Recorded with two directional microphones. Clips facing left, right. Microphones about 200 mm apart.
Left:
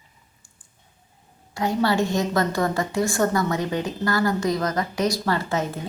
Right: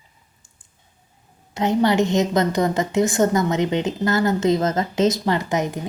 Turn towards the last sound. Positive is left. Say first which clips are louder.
# right 3 dB
turn(degrees=-15)  # may be behind; listen again after turning